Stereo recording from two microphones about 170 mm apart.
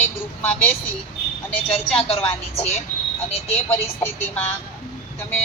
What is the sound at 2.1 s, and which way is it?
Speech, 35° left (ahead or behind).